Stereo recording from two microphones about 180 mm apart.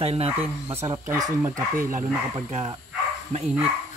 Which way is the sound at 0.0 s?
35° right (ahead or behind).